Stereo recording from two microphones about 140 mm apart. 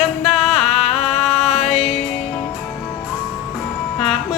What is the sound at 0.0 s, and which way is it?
Music, centre (ahead or behind).